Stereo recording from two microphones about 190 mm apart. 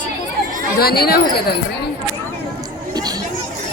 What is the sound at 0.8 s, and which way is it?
Speech, 55° left (ahead or behind).